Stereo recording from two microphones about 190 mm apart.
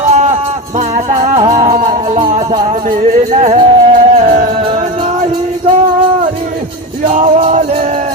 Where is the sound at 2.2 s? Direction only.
25° right (ahead or behind).